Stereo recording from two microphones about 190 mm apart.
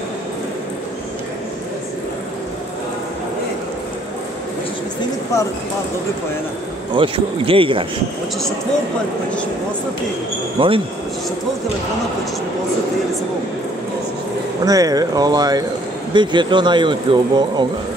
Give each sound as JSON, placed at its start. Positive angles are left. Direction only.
{"t": 7.0, "sound": "speech", "side_deg": -25}
{"t": 10.6, "sound": "speech", "side_deg": -25}
{"t": 14.6, "sound": "speech", "side_deg": -20}